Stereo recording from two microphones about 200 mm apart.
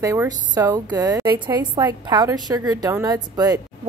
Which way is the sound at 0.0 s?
15° right (ahead or behind).